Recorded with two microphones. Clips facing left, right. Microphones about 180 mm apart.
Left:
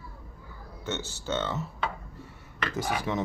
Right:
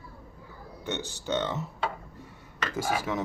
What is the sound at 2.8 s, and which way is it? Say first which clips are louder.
Speech: right 1 dB; 5° right (ahead or behind).